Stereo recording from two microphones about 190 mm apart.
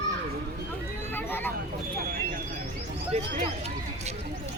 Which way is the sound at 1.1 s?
10° left (ahead or behind).